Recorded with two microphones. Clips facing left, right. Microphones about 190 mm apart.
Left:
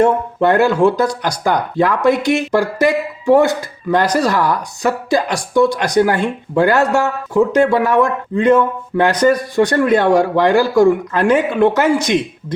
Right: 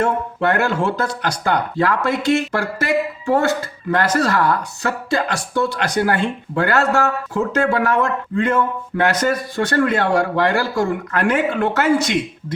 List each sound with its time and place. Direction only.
0.4 s speech: 15° left (ahead or behind)